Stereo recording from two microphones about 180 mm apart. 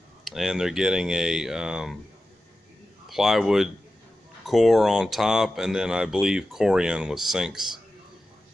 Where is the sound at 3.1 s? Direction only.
Centre (ahead or behind).